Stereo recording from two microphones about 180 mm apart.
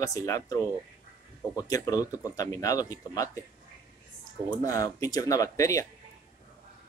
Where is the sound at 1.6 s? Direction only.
20° left (ahead or behind).